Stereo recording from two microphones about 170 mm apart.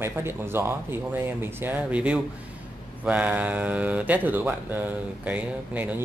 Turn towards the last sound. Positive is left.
turn(degrees=-10)  # may be behind; listen again after turning